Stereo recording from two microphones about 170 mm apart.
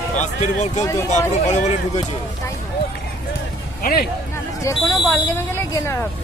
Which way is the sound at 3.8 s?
60° left (ahead or behind).